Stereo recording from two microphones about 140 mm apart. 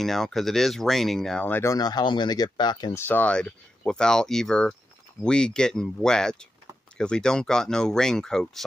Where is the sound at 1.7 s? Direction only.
30° left (ahead or behind).